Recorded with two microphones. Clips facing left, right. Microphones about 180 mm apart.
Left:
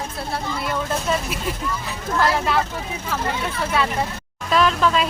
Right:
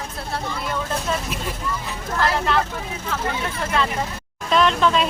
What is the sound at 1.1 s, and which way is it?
Vehicle, 10° left (ahead or behind).